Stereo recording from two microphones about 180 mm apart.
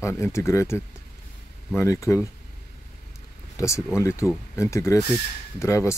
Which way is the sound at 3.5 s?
15° left (ahead or behind).